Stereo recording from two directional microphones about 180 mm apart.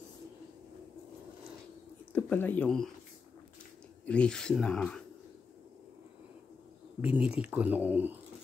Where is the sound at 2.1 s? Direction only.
10° left (ahead or behind).